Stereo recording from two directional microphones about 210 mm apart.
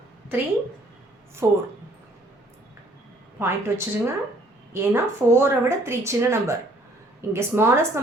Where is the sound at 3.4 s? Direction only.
10° right (ahead or behind).